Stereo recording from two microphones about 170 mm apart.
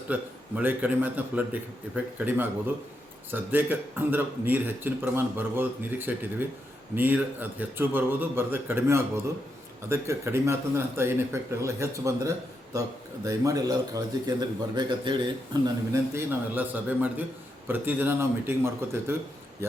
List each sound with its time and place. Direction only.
0.1 s a man's voice: 10° right (ahead or behind)